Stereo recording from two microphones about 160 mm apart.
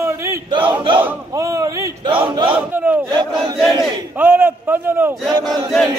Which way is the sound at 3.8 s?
10° right (ahead or behind).